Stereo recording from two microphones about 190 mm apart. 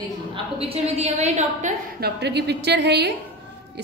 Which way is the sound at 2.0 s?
60° right (ahead or behind).